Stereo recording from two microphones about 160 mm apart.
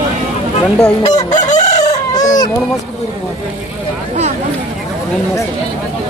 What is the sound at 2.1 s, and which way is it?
Baby cry, 25° left (ahead or behind).